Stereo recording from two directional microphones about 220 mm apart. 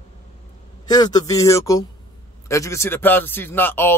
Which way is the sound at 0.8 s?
20° left (ahead or behind).